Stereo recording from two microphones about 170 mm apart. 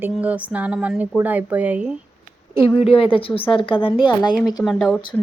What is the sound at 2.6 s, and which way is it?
A woman's voice, 35° left (ahead or behind).